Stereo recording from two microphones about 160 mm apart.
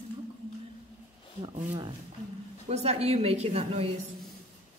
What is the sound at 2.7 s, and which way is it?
A woman's voice, 40° right (ahead or behind).